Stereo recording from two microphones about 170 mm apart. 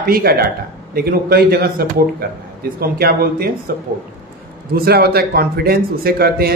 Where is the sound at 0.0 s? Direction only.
60° right (ahead or behind).